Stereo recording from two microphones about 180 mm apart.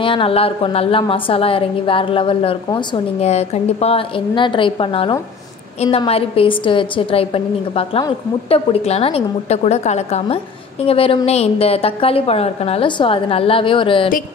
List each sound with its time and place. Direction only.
0.0 s a woman's voice: 30° left (ahead or behind)